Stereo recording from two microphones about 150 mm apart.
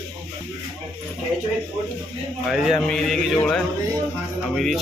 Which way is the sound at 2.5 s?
Centre (ahead or behind).